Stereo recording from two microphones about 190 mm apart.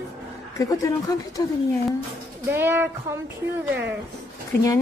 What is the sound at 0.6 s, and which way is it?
Speech, 20° left (ahead or behind).